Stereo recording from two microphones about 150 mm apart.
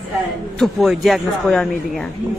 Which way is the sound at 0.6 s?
Centre (ahead or behind).